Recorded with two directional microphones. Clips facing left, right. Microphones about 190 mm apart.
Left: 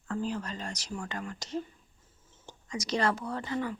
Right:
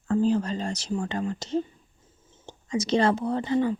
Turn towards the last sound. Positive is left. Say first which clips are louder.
# right 9 dB
turn(degrees=-25)  # may be behind; listen again after turning